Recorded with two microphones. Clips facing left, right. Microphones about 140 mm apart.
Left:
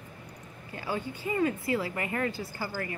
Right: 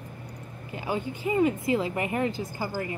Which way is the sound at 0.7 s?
20° right (ahead or behind).